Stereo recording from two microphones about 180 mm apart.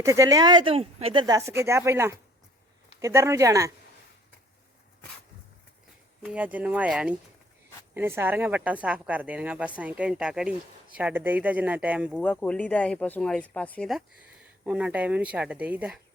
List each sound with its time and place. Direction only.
0.0 s speech: 15° right (ahead or behind)
6.2 s speech: 10° right (ahead or behind)
12.2 s speech: 5° left (ahead or behind)